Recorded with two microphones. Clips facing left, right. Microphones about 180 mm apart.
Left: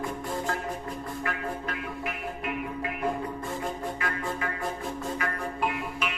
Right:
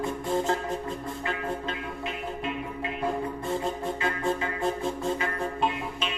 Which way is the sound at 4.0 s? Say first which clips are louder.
Right 4 dB; 25° right (ahead or behind).